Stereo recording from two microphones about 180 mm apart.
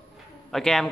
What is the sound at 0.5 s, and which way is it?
Speech, centre (ahead or behind).